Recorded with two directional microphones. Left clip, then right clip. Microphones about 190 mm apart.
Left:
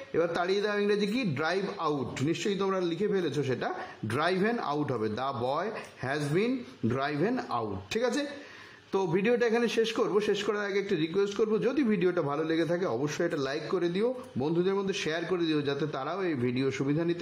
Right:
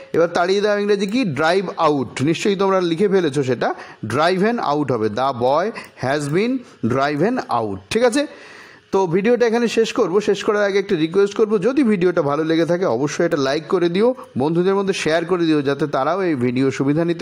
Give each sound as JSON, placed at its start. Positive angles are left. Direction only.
{"t": 0.1, "sound": "a man's voice", "side_deg": -35}